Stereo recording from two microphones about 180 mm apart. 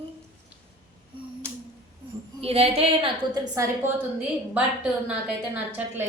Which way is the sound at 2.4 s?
35° right (ahead or behind).